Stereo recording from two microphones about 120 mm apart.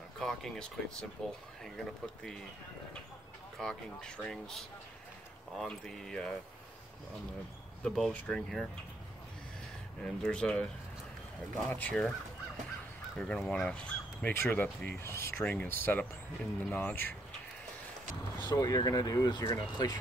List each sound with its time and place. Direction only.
0.2 s speech: 5° left (ahead or behind)
3.5 s speech: 5° left (ahead or behind)
7.8 s speech: 5° left (ahead or behind)
10.0 s speech: 5° left (ahead or behind)
11.7 s speech: 10° left (ahead or behind)
13.2 s speech: 10° left (ahead or behind)
18.4 s speech: 35° left (ahead or behind)